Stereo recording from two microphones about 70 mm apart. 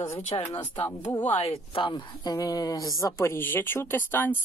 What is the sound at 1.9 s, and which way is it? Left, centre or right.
A woman's voice, left.